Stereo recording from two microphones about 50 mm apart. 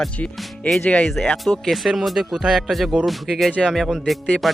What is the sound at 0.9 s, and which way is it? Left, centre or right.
Speech, left.